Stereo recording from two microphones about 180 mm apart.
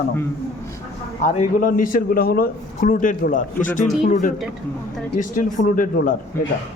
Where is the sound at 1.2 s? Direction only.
45° left (ahead or behind).